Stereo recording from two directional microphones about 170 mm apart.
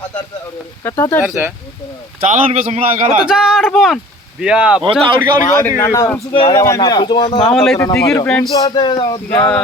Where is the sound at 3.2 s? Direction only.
5° right (ahead or behind).